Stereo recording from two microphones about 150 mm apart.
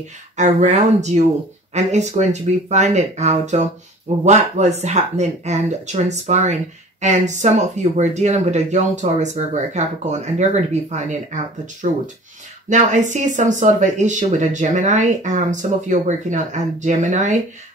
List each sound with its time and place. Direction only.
0.4 s speech: 50° right (ahead or behind)